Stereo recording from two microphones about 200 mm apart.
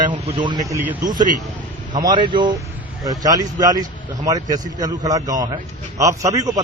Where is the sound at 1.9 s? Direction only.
20° right (ahead or behind).